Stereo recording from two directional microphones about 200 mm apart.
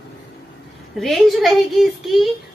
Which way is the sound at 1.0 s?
Centre (ahead or behind).